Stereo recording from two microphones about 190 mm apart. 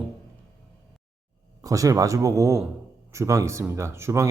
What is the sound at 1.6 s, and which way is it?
Speech, 15° right (ahead or behind).